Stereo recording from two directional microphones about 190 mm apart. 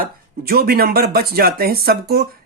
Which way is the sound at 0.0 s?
50° right (ahead or behind).